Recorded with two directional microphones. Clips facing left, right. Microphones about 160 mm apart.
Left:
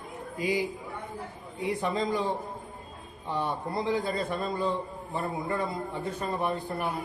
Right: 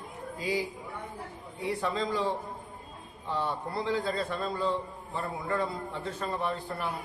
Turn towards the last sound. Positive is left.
turn(degrees=15)  # may be behind; listen again after turning